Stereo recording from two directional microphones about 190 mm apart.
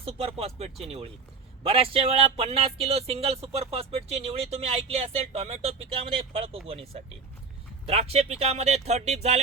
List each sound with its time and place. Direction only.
0.0 s speech: 30° right (ahead or behind)